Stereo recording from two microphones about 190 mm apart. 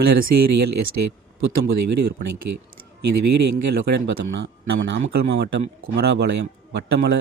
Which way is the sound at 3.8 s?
75° right (ahead or behind).